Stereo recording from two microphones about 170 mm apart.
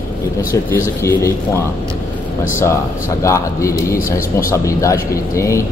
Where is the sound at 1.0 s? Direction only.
15° left (ahead or behind).